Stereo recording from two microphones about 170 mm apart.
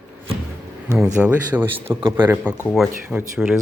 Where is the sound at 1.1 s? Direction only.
10° right (ahead or behind).